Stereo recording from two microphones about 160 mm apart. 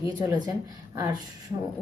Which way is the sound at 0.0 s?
20° right (ahead or behind).